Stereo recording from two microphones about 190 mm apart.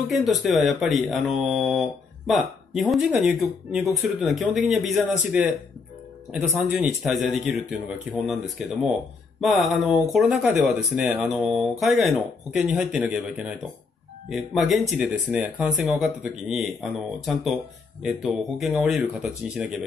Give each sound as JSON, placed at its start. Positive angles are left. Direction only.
{"t": 0.1, "sound": "speech", "side_deg": 0}